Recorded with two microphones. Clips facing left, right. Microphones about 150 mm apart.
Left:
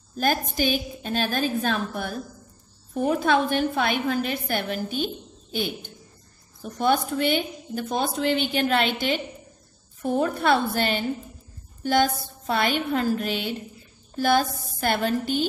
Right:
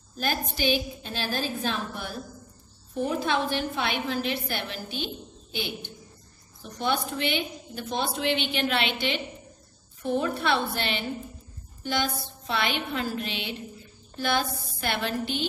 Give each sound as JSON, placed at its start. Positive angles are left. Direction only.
{"t": 0.2, "sound": "a woman's voice", "side_deg": 45}